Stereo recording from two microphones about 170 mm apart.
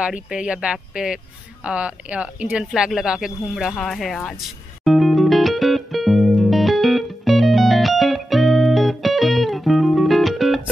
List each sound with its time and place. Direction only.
0.0 s speech: 5° right (ahead or behind)
4.8 s music: centre (ahead or behind)